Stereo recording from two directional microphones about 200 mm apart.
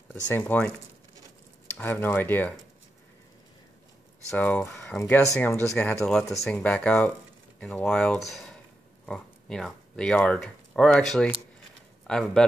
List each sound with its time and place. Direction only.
0.1 s speech: 10° left (ahead or behind)
1.8 s speech: 10° left (ahead or behind)
4.3 s speech: 5° left (ahead or behind)